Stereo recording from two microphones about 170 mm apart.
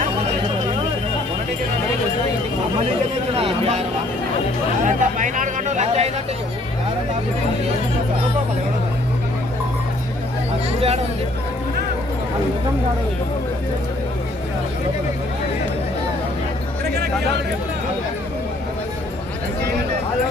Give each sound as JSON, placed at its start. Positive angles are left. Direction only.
{"t": 3.3, "sound": "speech", "side_deg": -35}
{"t": 4.9, "sound": "music", "side_deg": -50}
{"t": 10.8, "sound": "speech", "side_deg": -35}